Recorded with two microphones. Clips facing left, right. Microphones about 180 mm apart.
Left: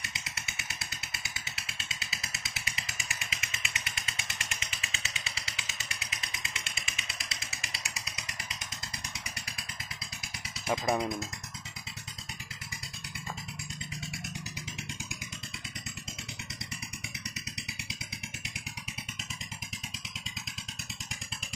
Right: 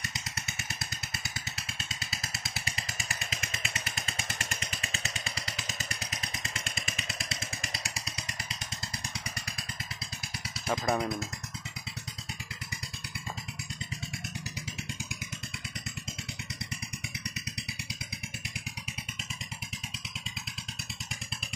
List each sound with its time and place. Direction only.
0.0 s motorcycle: 45° right (ahead or behind)
10.7 s speech: 10° left (ahead or behind)